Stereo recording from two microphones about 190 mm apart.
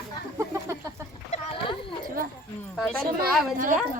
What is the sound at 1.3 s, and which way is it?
Splash, 30° left (ahead or behind).